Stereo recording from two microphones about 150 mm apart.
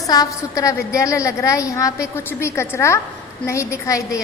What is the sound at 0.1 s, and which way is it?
A woman's voice, 25° left (ahead or behind).